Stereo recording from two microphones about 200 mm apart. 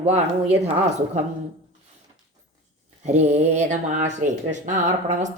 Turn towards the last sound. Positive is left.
turn(degrees=-35)  # may be behind; listen again after turning